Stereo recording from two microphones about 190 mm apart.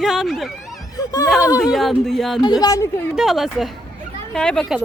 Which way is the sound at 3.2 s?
Centre (ahead or behind).